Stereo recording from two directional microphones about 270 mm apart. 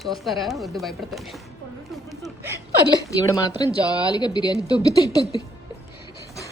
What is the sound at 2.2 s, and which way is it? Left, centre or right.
Chuckle, centre.